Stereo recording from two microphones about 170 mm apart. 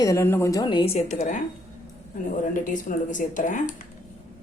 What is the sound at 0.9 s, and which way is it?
Speech, 45° left (ahead or behind).